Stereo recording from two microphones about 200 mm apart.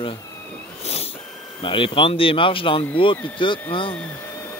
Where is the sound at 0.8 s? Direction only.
30° left (ahead or behind).